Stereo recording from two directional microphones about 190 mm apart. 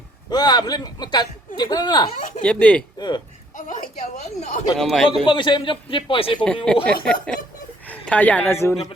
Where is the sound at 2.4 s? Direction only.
5° left (ahead or behind).